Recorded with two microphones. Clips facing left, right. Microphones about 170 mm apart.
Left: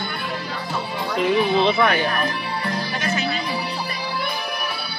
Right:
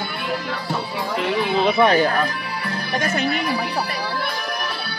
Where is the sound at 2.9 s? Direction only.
55° right (ahead or behind).